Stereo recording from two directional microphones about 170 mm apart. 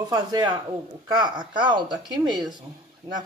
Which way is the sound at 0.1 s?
25° right (ahead or behind).